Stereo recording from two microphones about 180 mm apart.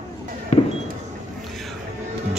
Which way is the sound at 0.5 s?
40° left (ahead or behind).